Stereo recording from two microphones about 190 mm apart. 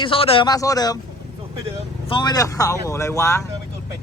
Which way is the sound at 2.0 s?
25° left (ahead or behind).